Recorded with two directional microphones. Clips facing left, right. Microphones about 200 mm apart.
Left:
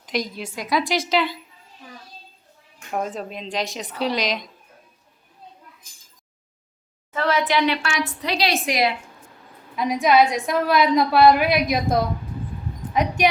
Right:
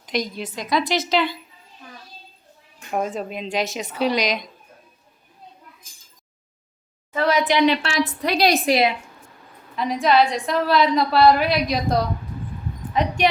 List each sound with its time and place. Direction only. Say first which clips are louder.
0.0 s a woman's voice: right 1 dB; 5° left (ahead or behind)
2.9 s a woman's voice: right 2 dB; 5° right (ahead or behind)
7.1 s a woman's voice: right 2 dB; 15° right (ahead or behind)
8.2 s a woman's voice: right 5 dB; 50° right (ahead or behind)
8.6 s a woman's voice: right 3 dB; 30° right (ahead or behind)
9.7 s a woman's voice: left 1 dB; 10° left (ahead or behind)
12.9 s speech: even; 10° left (ahead or behind)